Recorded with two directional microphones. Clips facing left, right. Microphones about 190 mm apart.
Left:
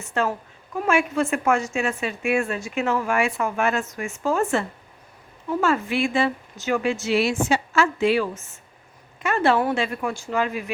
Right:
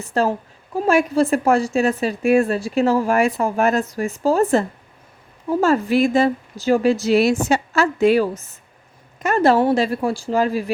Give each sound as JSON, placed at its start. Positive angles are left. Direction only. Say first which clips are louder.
{"t": 0.0, "sound": "a woman's voice", "louder": "right 5 dB", "side_deg": -35}